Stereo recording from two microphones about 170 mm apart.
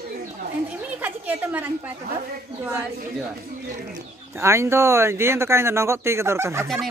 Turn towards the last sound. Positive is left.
turn(degrees=-15)  # may be behind; listen again after turning